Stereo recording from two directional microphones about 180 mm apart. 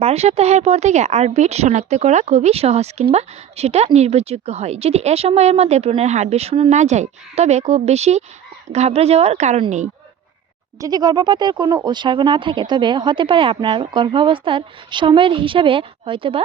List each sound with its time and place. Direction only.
0.0 s speech: 35° right (ahead or behind)
10.8 s speech: 20° right (ahead or behind)